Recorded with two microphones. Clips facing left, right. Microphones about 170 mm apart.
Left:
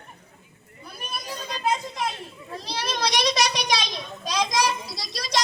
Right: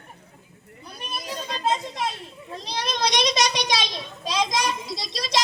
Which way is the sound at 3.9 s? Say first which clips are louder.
Right 1 dB; 25° right (ahead or behind).